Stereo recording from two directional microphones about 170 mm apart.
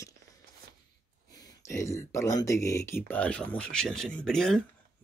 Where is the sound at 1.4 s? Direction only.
15° left (ahead or behind).